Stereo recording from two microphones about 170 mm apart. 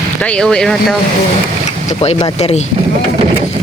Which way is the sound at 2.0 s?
35° left (ahead or behind).